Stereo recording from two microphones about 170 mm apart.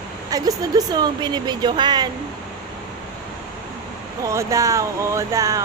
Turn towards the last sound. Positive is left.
turn(degrees=-20)  # may be behind; listen again after turning